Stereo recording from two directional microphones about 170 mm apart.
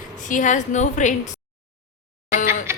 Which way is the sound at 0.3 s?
50° left (ahead or behind).